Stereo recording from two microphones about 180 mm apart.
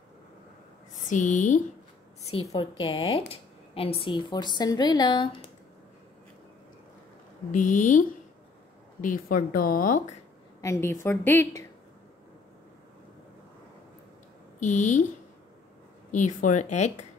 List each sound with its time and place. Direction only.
0.9 s a woman's voice: 45° left (ahead or behind)
2.8 s speech: 30° left (ahead or behind)
7.5 s a woman's voice: 45° left (ahead or behind)
10.6 s a woman's voice: 15° left (ahead or behind)
14.6 s speech: 40° left (ahead or behind)
16.1 s a woman's voice: 45° left (ahead or behind)